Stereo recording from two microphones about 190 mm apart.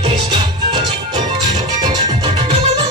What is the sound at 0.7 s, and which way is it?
Music, 25° right (ahead or behind).